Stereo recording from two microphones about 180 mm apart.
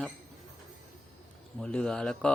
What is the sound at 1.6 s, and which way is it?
Speech, 5° left (ahead or behind).